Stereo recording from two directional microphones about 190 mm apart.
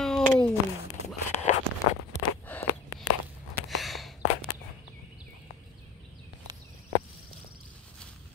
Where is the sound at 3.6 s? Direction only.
Centre (ahead or behind).